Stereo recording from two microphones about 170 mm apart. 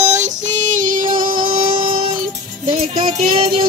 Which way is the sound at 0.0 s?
45° right (ahead or behind).